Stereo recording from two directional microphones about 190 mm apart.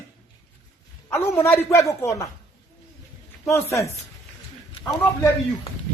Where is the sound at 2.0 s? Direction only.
15° left (ahead or behind).